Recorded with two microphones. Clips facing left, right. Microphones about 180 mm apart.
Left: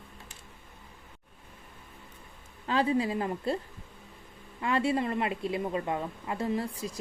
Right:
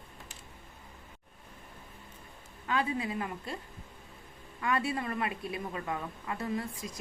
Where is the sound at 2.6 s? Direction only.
30° left (ahead or behind).